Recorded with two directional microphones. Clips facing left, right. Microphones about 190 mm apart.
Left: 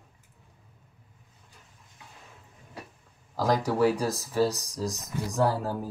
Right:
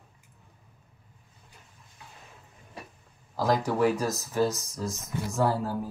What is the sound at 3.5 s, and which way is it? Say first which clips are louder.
Speech: left 1 dB; 40° left (ahead or behind).